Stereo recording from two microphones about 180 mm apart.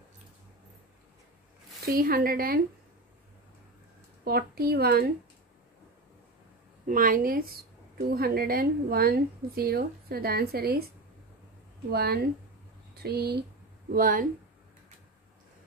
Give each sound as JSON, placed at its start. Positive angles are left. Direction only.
{"t": 1.9, "sound": "a woman's voice", "side_deg": -55}
{"t": 4.2, "sound": "a woman's voice", "side_deg": -60}
{"t": 6.9, "sound": "a woman's voice", "side_deg": -50}
{"t": 11.9, "sound": "a woman's voice", "side_deg": -60}
{"t": 13.9, "sound": "speech", "side_deg": -50}